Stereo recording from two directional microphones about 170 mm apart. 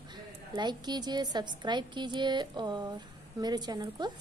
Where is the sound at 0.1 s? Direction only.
25° right (ahead or behind).